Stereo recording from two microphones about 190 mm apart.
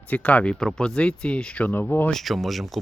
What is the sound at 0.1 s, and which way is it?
Speech, 5° left (ahead or behind).